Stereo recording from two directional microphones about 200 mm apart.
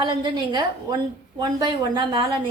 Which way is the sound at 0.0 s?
25° right (ahead or behind).